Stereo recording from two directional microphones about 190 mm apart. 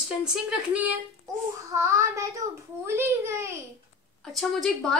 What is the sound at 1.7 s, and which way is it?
Child singing, 15° right (ahead or behind).